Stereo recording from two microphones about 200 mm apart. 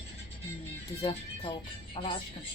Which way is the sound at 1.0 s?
25° left (ahead or behind).